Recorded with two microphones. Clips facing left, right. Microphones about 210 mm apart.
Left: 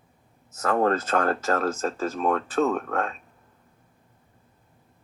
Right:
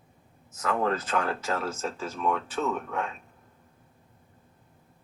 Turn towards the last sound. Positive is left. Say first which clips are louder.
# left 6 dB
turn(degrees=55)  # may be behind; listen again after turning